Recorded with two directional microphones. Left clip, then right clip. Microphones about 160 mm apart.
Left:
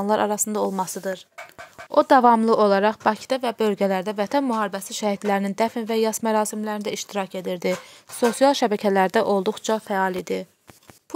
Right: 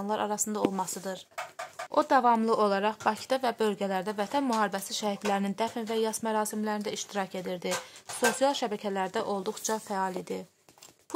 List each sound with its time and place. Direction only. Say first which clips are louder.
0.0 s a woman's voice: left 9 dB; 45° left (ahead or behind)
2.0 s speech: left 8 dB; 50° left (ahead or behind)
2.3 s a woman's voice: left 8 dB; 35° left (ahead or behind)
4.5 s a woman's voice: left 4 dB; 25° left (ahead or behind)